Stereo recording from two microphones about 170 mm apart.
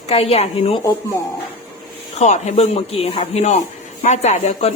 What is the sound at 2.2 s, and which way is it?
Speech, 40° left (ahead or behind).